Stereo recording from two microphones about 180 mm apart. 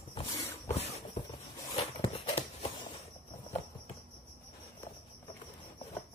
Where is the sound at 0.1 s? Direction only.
30° left (ahead or behind).